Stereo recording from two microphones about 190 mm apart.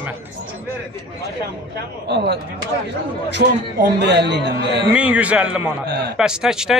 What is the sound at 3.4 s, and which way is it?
A man's voice, 65° right (ahead or behind).